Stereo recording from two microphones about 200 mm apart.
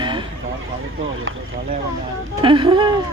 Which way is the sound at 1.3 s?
85° right.